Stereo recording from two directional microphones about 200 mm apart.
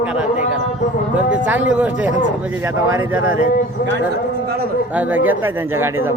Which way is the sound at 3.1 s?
90° right.